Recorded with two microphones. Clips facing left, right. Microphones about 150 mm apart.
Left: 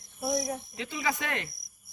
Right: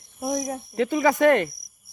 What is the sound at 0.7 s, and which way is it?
Speech, 55° right (ahead or behind).